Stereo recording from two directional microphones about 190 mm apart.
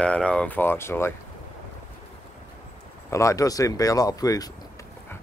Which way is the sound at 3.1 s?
15° left (ahead or behind).